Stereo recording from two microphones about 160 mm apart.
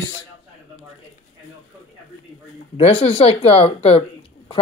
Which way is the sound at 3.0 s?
35° left (ahead or behind).